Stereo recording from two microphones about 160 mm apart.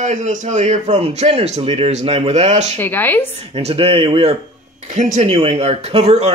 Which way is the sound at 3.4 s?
40° right (ahead or behind).